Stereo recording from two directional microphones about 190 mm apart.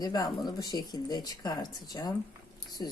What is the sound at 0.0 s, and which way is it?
A woman's voice, 20° left (ahead or behind).